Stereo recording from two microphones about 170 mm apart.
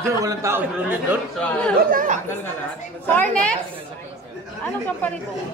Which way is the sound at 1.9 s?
50° right (ahead or behind).